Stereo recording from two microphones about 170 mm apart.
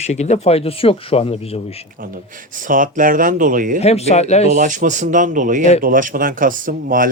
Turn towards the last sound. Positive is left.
turn(degrees=-50)  # may be behind; listen again after turning